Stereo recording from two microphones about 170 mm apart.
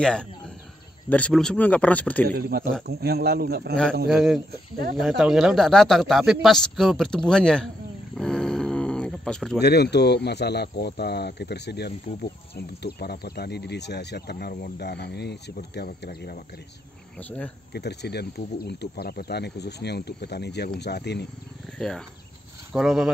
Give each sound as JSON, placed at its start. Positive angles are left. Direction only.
{"t": 0.0, "sound": "speech", "side_deg": 5}
{"t": 2.2, "sound": "speech", "side_deg": -65}
{"t": 4.1, "sound": "speech", "side_deg": 0}
{"t": 4.5, "sound": "speech", "side_deg": -65}
{"t": 4.9, "sound": "speech", "side_deg": -5}
{"t": 8.2, "sound": "dog", "side_deg": 5}
{"t": 9.6, "sound": "speech", "side_deg": 75}
{"t": 17.2, "sound": "speech", "side_deg": 10}
{"t": 17.7, "sound": "speech", "side_deg": 75}
{"t": 21.7, "sound": "speech", "side_deg": 5}